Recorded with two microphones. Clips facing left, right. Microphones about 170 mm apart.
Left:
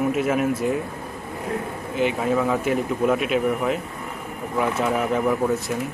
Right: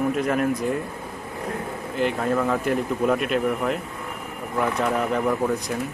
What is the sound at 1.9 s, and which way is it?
Speech, 5° left (ahead or behind).